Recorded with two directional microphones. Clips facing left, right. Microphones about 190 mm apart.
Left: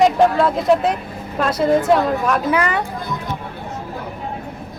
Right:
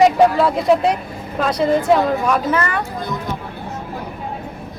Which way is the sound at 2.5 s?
15° left (ahead or behind).